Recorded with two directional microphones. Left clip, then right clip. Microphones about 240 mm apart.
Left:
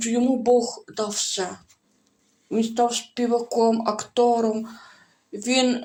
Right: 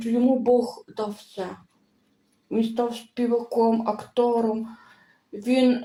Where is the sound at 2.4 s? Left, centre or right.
Left.